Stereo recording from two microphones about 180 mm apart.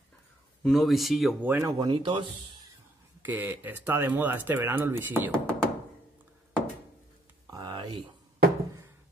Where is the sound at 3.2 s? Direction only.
10° right (ahead or behind).